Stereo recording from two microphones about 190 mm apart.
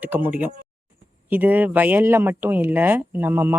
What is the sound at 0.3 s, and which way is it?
Speech, 10° right (ahead or behind).